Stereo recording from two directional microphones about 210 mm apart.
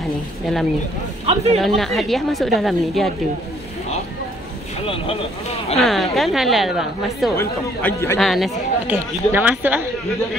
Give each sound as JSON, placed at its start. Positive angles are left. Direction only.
{"t": 1.2, "sound": "speech", "side_deg": -30}
{"t": 1.8, "sound": "a woman's voice", "side_deg": 0}
{"t": 4.8, "sound": "speech", "side_deg": 25}
{"t": 5.8, "sound": "a woman's voice", "side_deg": 0}
{"t": 7.3, "sound": "speech", "side_deg": 15}
{"t": 8.2, "sound": "speech", "side_deg": 0}